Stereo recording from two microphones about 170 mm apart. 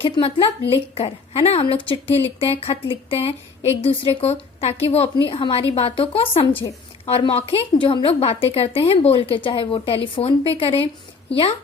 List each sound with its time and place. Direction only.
0.0 s a woman's voice: 30° left (ahead or behind)